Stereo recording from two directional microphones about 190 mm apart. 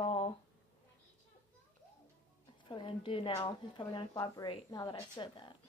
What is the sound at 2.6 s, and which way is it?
A woman's voice, 25° left (ahead or behind).